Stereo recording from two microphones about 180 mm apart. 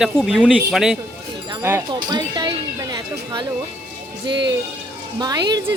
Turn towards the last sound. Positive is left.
turn(degrees=-20)  # may be behind; listen again after turning